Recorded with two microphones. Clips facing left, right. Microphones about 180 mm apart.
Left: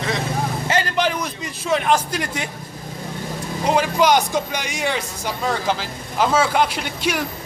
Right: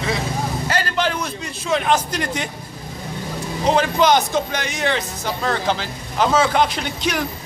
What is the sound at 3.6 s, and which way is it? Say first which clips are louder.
A man's voice: right 1 dB; 10° left (ahead or behind).